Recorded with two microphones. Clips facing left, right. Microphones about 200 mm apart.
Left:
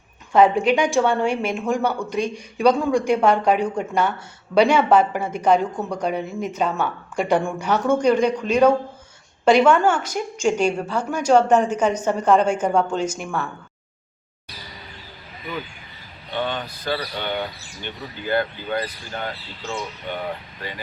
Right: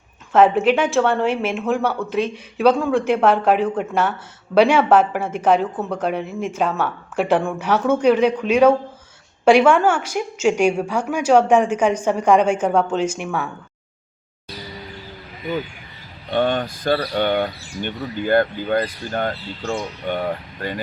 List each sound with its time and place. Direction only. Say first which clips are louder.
0.3 s a woman's voice: right 1 dB; 5° right (ahead or behind)
16.3 s speech: right 7 dB; 50° right (ahead or behind)